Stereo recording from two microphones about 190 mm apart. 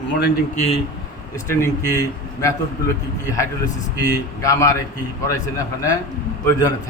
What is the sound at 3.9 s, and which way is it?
Speech, 20° left (ahead or behind).